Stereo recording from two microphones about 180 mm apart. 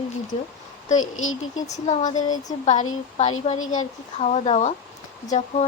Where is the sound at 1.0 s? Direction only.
90° left.